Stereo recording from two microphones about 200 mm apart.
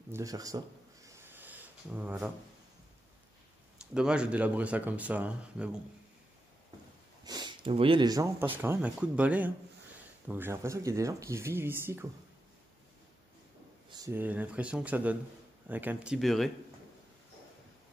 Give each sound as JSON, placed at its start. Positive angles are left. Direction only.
{"t": 0.1, "sound": "speech", "side_deg": -15}
{"t": 1.0, "sound": "a sound", "side_deg": -10}
{"t": 3.9, "sound": "speech", "side_deg": -5}
{"t": 7.2, "sound": "speech", "side_deg": -20}
{"t": 13.8, "sound": "speech", "side_deg": -15}